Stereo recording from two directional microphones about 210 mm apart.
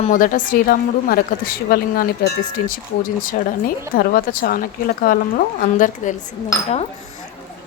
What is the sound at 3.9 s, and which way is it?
A woman's voice, 45° left (ahead or behind).